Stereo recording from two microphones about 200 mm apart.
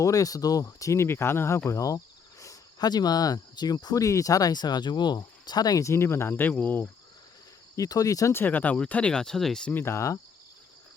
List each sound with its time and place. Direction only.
0.0 s speech: 15° left (ahead or behind)